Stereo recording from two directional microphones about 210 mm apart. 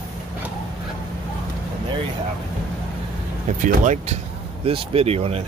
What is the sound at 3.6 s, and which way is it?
Speech, 35° right (ahead or behind).